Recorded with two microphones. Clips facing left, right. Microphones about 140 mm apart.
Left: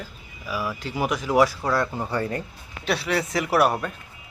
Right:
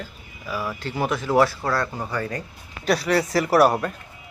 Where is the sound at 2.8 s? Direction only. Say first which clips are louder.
Right 4 dB; centre (ahead or behind).